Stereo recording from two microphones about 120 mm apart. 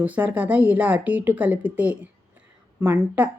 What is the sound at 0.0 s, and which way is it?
A woman's voice, 10° right (ahead or behind).